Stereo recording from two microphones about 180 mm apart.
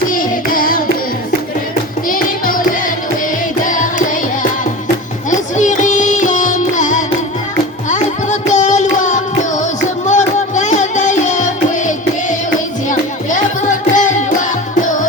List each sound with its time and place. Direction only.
0.1 s music: 50° left (ahead or behind)
2.0 s music: 50° left (ahead or behind)
5.3 s music: 45° left (ahead or behind)
12.9 s music: 45° left (ahead or behind)